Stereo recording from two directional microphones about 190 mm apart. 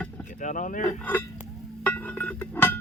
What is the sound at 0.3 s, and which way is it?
Speech, 45° left (ahead or behind).